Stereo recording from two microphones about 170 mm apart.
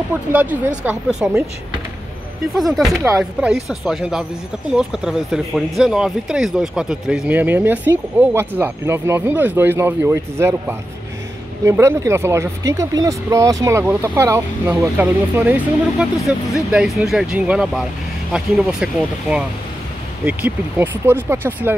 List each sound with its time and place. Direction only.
0.3 s speech: 10° right (ahead or behind)
2.5 s speech: centre (ahead or behind)